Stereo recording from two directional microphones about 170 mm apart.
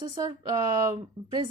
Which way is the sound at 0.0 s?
20° right (ahead or behind).